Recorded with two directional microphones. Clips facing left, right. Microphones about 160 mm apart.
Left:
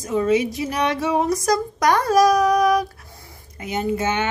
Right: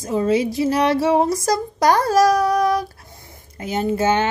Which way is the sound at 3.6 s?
30° right (ahead or behind).